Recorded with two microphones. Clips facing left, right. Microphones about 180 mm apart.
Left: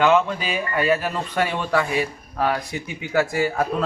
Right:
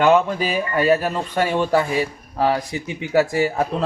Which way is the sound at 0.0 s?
40° right (ahead or behind).